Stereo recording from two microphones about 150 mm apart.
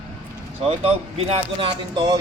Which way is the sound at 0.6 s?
40° right (ahead or behind).